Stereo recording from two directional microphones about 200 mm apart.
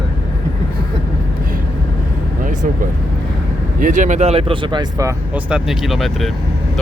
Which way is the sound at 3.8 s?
40° right (ahead or behind).